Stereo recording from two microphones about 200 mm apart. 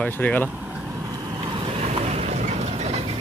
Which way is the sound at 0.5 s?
10° right (ahead or behind).